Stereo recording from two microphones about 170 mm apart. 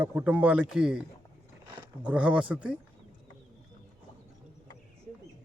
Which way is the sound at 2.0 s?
5° right (ahead or behind).